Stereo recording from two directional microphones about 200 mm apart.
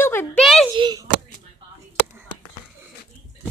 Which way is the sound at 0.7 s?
20° right (ahead or behind).